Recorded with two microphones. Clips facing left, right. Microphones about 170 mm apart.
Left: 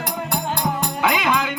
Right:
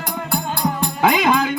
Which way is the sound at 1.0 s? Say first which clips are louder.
Right 5 dB; 40° right (ahead or behind).